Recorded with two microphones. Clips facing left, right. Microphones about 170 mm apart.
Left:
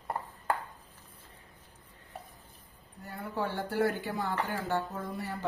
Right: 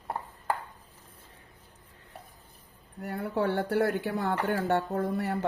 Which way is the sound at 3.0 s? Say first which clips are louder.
Right 6 dB; 65° right (ahead or behind).